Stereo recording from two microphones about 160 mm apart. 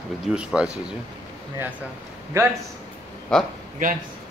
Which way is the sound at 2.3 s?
15° right (ahead or behind).